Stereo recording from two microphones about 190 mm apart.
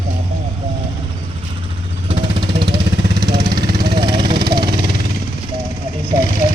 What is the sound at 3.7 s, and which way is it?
Vehicle, 55° right (ahead or behind).